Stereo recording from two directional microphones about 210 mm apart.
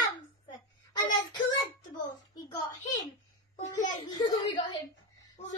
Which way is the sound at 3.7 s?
20° left (ahead or behind).